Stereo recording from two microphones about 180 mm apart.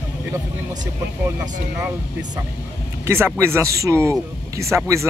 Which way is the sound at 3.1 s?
15° right (ahead or behind).